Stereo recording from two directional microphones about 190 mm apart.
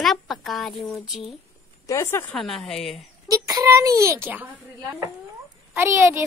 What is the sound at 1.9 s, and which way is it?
Speech, 15° left (ahead or behind).